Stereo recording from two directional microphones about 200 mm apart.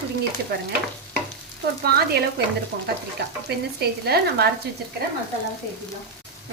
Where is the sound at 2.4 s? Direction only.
55° right (ahead or behind).